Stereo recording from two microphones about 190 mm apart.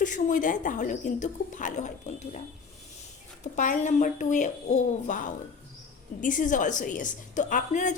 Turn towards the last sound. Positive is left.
turn(degrees=40)  # may be behind; listen again after turning